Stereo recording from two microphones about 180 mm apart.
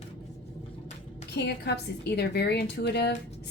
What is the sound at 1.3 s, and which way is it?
A woman's voice, 65° left (ahead or behind).